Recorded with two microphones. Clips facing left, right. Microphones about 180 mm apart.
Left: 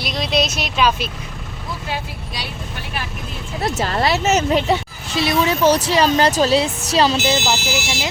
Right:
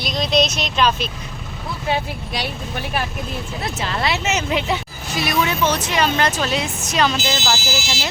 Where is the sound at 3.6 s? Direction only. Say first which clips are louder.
Left 6 dB; 40° left (ahead or behind).